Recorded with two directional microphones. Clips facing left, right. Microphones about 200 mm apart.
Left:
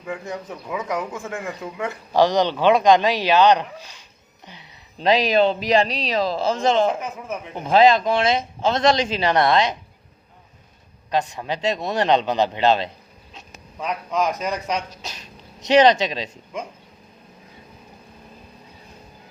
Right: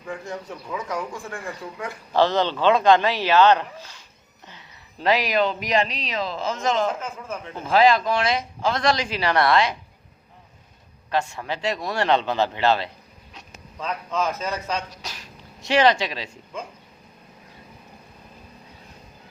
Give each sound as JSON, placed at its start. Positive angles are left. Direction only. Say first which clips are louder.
{"t": 0.1, "sound": "speech", "louder": "left 2 dB", "side_deg": 20}
{"t": 7.0, "sound": "speech", "louder": "left 2 dB", "side_deg": 15}
{"t": 11.1, "sound": "speech", "louder": "left 2 dB", "side_deg": 15}